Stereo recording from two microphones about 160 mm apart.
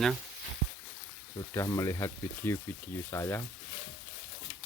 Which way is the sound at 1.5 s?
20° left (ahead or behind).